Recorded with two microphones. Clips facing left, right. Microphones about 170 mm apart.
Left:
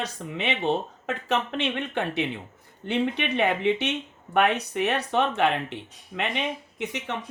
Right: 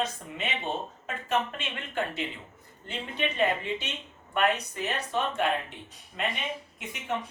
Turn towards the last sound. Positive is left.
turn(degrees=75)  # may be behind; listen again after turning